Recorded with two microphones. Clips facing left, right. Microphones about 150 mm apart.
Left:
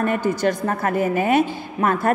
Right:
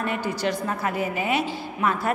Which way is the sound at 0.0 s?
50° left (ahead or behind).